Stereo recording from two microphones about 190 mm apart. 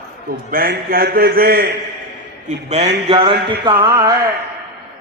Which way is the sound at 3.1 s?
25° right (ahead or behind).